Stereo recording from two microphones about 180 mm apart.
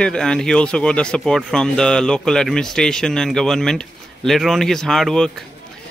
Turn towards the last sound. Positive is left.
turn(degrees=0)  # may be behind; listen again after turning